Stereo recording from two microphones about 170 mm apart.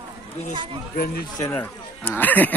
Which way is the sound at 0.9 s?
65° left (ahead or behind).